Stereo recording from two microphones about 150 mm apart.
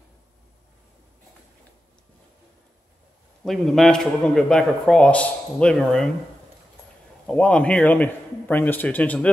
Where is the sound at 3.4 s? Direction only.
Centre (ahead or behind).